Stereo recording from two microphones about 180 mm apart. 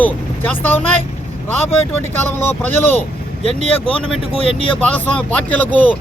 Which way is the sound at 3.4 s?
30° left (ahead or behind).